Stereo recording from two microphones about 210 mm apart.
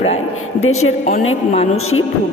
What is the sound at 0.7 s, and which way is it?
Music, 85° left.